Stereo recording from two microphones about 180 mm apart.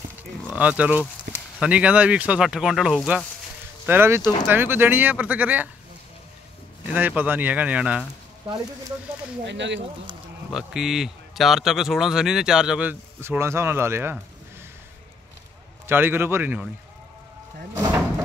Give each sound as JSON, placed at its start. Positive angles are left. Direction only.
{"t": 0.5, "sound": "speech", "side_deg": -5}
{"t": 1.3, "sound": "a sound", "side_deg": -65}
{"t": 1.6, "sound": "a man's voice", "side_deg": -5}
{"t": 3.8, "sound": "speech", "side_deg": -10}
{"t": 6.9, "sound": "speech", "side_deg": -10}
{"t": 9.5, "sound": "speech", "side_deg": -80}
{"t": 10.5, "sound": "a man's voice", "side_deg": 0}
{"t": 15.9, "sound": "speech", "side_deg": -10}
{"t": 17.7, "sound": "a sound", "side_deg": -15}